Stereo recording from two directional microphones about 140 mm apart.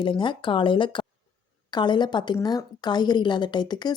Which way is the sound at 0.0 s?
35° left (ahead or behind).